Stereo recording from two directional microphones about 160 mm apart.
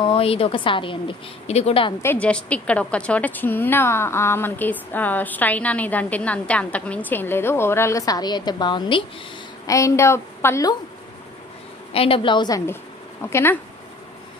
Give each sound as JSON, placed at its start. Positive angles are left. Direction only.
{"t": 0.0, "sound": "a woman's voice", "side_deg": 35}
{"t": 2.0, "sound": "a woman's voice", "side_deg": 10}
{"t": 9.7, "sound": "a woman's voice", "side_deg": 20}
{"t": 11.9, "sound": "a woman's voice", "side_deg": 35}